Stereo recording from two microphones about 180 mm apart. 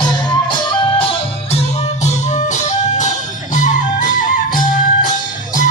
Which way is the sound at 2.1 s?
40° left (ahead or behind).